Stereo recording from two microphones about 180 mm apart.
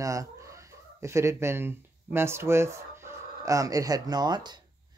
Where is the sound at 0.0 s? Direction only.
15° right (ahead or behind).